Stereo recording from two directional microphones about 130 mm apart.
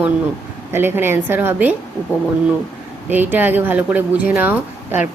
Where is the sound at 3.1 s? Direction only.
15° right (ahead or behind).